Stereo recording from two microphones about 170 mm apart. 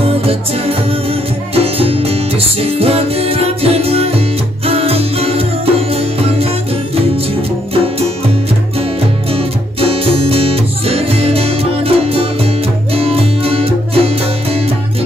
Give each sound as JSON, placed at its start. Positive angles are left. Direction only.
{"t": 0.0, "sound": "music", "side_deg": -35}
{"t": 7.7, "sound": "music", "side_deg": -35}
{"t": 9.3, "sound": "music", "side_deg": -35}